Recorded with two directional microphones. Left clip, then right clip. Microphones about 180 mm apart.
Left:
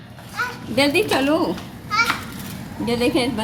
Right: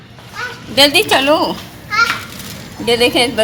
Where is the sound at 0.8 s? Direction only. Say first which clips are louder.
Right 8 dB; centre (ahead or behind).